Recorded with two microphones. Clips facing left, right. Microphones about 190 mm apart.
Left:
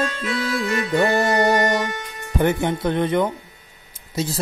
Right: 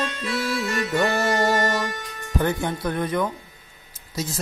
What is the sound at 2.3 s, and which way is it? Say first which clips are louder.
Speech: left 4 dB; 20° left (ahead or behind).